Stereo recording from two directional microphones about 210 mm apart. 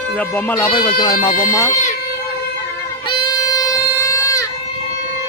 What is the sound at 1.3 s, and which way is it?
Speech, 40° left (ahead or behind).